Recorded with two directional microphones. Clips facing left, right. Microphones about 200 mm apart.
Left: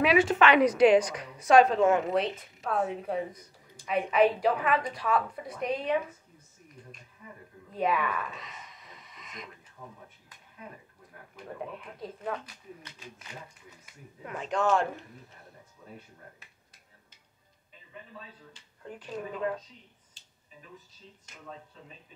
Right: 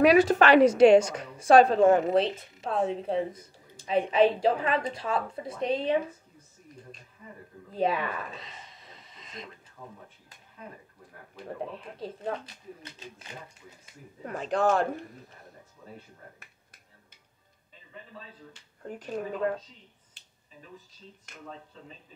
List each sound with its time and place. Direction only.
0.0 s a woman's voice: 40° right (ahead or behind)
7.7 s a sound: 30° right (ahead or behind)
11.4 s a woman's voice: 30° right (ahead or behind)
18.8 s a woman's voice: 45° right (ahead or behind)
20.2 s finger snapping: 60° right (ahead or behind)